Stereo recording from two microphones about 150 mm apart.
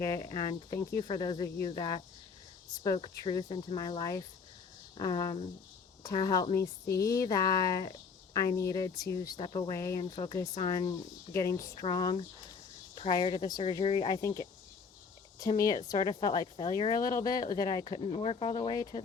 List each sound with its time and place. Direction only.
0.0 s speech: 25° left (ahead or behind)
14.1 s speech: 20° left (ahead or behind)